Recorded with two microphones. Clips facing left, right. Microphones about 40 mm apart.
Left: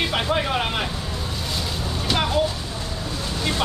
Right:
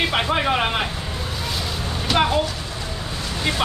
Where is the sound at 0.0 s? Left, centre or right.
Centre.